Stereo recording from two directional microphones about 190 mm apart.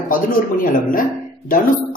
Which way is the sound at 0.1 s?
45° left (ahead or behind).